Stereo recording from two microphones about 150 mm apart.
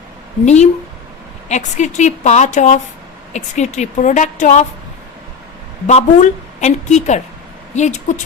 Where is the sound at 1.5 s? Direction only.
55° left (ahead or behind).